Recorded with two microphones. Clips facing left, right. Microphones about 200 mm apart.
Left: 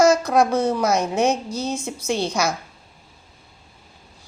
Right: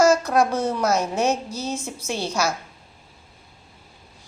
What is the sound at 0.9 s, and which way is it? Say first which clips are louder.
A woman's voice: left 2 dB; 5° right (ahead or behind).